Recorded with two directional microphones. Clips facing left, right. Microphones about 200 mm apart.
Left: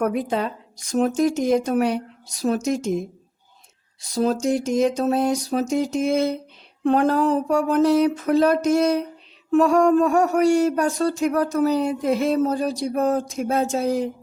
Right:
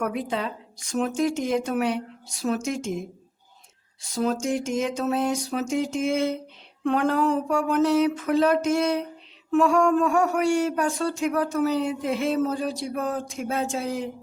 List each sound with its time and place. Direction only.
0.0 s speech: 45° left (ahead or behind)
4.0 s speech: 35° left (ahead or behind)